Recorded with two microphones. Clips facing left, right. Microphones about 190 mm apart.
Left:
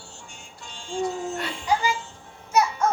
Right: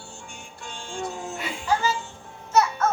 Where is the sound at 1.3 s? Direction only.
5° right (ahead or behind).